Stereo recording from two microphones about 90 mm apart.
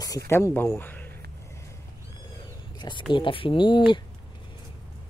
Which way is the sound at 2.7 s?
60° left (ahead or behind).